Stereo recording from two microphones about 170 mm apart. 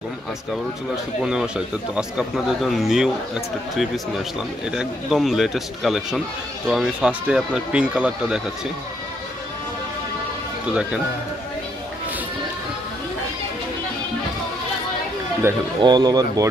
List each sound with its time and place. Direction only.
1.2 s speech: 5° right (ahead or behind)
10.7 s speech: 5° right (ahead or behind)
15.8 s speech: 25° right (ahead or behind)